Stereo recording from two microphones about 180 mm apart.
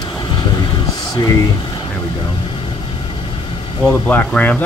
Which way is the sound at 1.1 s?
20° left (ahead or behind).